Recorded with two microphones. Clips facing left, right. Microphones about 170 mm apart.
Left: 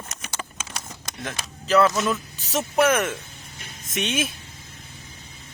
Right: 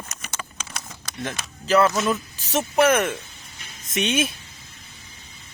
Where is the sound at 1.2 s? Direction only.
Centre (ahead or behind).